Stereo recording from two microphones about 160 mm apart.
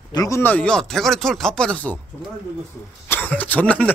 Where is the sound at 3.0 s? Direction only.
10° left (ahead or behind).